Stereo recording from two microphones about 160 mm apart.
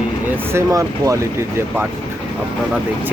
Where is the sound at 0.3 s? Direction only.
15° right (ahead or behind).